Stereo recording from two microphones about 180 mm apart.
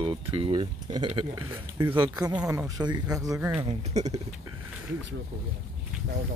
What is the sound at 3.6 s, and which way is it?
Speech, 35° right (ahead or behind).